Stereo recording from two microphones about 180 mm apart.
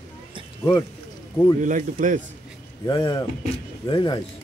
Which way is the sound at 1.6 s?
45° right (ahead or behind).